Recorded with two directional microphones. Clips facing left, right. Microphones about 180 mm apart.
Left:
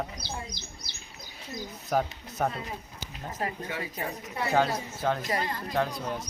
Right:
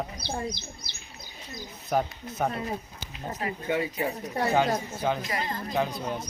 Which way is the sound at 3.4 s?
40° left (ahead or behind).